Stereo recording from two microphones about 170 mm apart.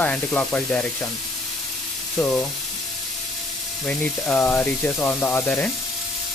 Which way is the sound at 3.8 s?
5° left (ahead or behind).